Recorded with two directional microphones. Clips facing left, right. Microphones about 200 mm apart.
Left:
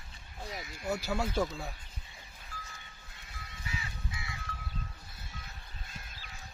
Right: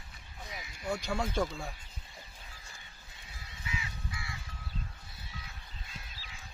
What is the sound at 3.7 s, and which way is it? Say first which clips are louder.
Music: right 1 dB; 25° left (ahead or behind).